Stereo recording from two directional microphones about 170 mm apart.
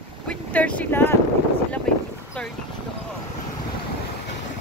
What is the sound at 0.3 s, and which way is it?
Speech, 10° left (ahead or behind).